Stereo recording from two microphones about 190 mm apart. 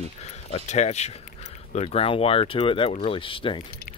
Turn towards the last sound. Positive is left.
turn(degrees=30)  # may be behind; listen again after turning